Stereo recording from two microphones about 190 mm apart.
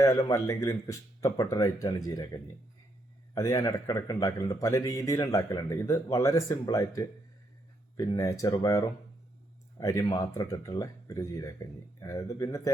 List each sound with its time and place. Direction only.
0.0 s speech: 15° left (ahead or behind)